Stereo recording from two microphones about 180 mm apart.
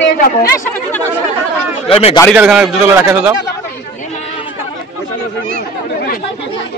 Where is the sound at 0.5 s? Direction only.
10° left (ahead or behind).